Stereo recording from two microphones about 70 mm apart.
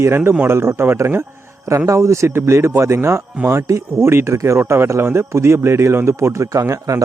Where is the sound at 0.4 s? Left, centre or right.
Right.